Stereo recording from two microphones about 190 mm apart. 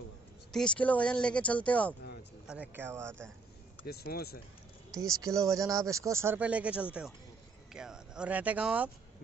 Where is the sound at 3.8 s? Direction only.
55° left (ahead or behind).